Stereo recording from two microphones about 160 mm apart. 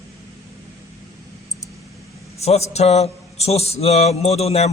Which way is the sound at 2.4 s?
40° left (ahead or behind).